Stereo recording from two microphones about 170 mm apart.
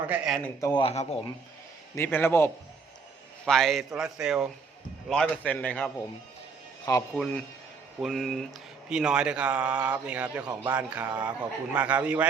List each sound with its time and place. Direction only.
0.1 s a man's voice: centre (ahead or behind)
0.7 s speech: 35° left (ahead or behind)
2.0 s a man's voice: 10° left (ahead or behind)
3.4 s a man's voice: centre (ahead or behind)
7.2 s a man's voice: 5° left (ahead or behind)